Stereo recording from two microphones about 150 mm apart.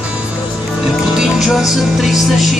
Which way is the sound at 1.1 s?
5° right (ahead or behind).